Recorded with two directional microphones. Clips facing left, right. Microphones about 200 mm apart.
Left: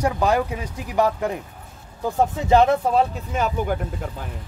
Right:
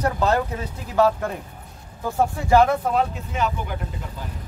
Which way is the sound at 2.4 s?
20° left (ahead or behind).